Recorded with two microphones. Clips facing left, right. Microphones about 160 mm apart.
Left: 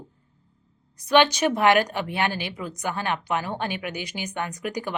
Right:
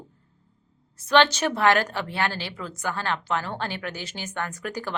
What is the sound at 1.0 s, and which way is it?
A woman's voice, 15° left (ahead or behind).